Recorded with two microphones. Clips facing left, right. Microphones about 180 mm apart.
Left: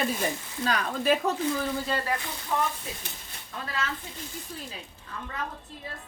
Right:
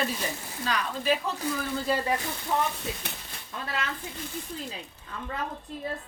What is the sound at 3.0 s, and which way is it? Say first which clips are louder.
Speech: right 4 dB; 65° right (ahead or behind).